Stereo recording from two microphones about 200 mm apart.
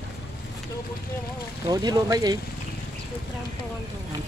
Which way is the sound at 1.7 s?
20° right (ahead or behind).